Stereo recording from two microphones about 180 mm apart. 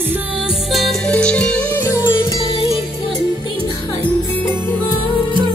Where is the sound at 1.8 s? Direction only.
20° left (ahead or behind).